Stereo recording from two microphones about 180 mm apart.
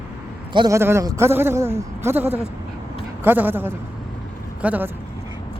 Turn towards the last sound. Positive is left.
turn(degrees=-10)  # may be behind; listen again after turning